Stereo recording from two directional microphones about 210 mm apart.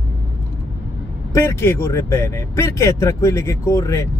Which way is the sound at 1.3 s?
15° left (ahead or behind).